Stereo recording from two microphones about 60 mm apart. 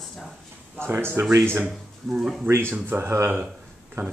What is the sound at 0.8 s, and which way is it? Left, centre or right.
Speech, right.